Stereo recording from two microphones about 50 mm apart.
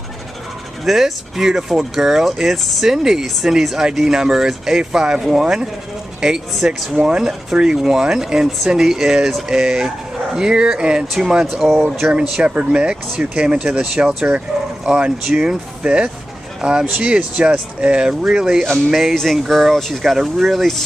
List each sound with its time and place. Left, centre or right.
0.8 s speech: centre
7.1 s speech: centre